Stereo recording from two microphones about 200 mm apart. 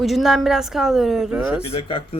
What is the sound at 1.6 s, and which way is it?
Speech, 30° left (ahead or behind).